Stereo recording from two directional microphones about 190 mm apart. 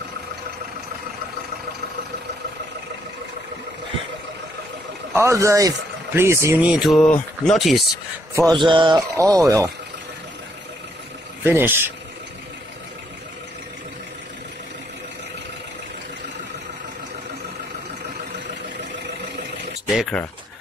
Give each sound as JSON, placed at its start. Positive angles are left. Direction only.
{"t": 5.1, "sound": "a man's voice", "side_deg": -15}
{"t": 6.7, "sound": "music", "side_deg": 0}
{"t": 8.5, "sound": "speech", "side_deg": -25}
{"t": 11.4, "sound": "a man's voice", "side_deg": -10}
{"t": 19.9, "sound": "music", "side_deg": 0}